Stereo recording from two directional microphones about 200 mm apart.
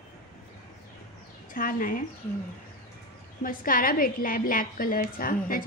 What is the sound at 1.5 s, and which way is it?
Speech, 45° left (ahead or behind).